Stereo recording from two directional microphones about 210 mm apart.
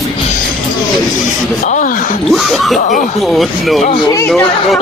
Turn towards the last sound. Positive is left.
turn(degrees=0)  # may be behind; listen again after turning